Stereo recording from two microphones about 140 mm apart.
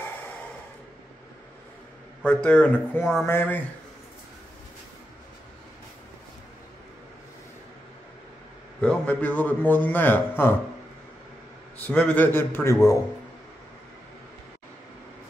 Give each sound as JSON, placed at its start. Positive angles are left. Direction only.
{"t": 2.2, "sound": "a man's voice", "side_deg": 10}
{"t": 8.8, "sound": "a man's voice", "side_deg": 10}
{"t": 11.8, "sound": "a man's voice", "side_deg": 10}